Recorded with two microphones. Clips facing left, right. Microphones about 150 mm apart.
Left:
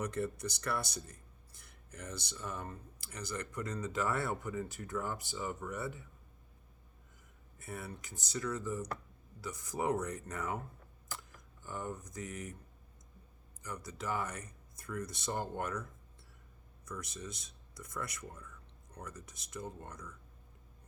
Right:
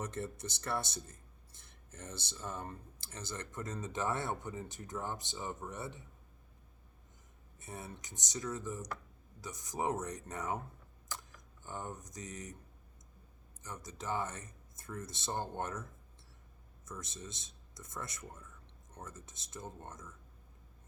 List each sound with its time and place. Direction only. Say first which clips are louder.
0.0 s speech: left 4 dB; 25° right (ahead or behind)
7.6 s speech: left 2 dB; 20° right (ahead or behind)
13.6 s speech: left 3 dB; 25° right (ahead or behind)